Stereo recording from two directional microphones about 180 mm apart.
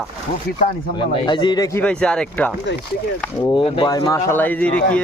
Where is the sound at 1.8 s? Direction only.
5° left (ahead or behind).